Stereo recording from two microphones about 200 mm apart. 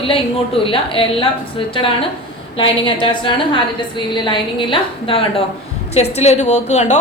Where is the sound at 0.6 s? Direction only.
25° left (ahead or behind).